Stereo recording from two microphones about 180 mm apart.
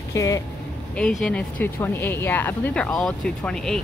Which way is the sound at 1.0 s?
5° left (ahead or behind).